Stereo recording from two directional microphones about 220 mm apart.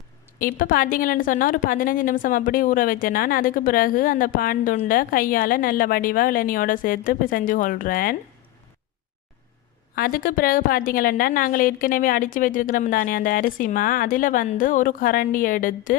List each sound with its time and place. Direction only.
0.3 s a woman's voice: 40° left (ahead or behind)
9.9 s a woman's voice: 40° left (ahead or behind)